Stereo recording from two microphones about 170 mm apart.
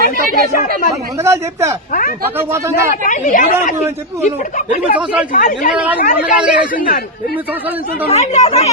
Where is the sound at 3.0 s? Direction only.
50° left (ahead or behind).